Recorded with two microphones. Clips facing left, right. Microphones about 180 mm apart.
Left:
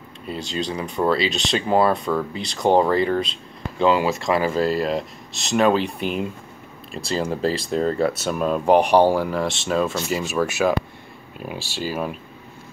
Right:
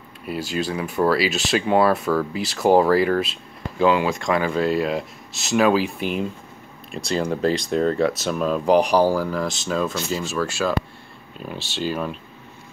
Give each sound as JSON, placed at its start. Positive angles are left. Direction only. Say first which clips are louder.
{"t": 0.3, "sound": "speech", "louder": "right 2 dB", "side_deg": -5}
{"t": 9.0, "sound": "speech", "louder": "left 1 dB", "side_deg": 20}
{"t": 9.3, "sound": "speech", "louder": "left 2 dB", "side_deg": 0}